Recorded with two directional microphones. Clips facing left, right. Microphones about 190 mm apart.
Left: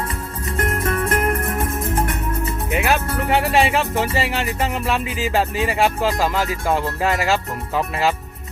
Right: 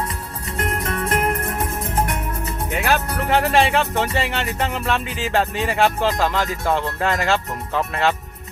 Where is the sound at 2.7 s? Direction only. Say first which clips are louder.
Left 1 dB; 5° left (ahead or behind).